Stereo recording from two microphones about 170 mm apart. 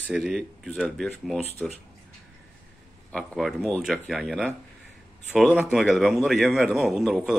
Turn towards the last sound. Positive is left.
turn(degrees=-5)  # may be behind; listen again after turning